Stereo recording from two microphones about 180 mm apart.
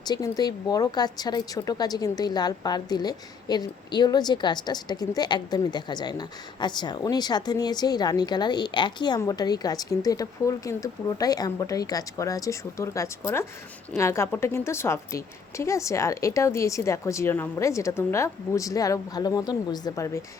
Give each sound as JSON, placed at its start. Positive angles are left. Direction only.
{"t": 0.0, "sound": "a woman's voice", "side_deg": 20}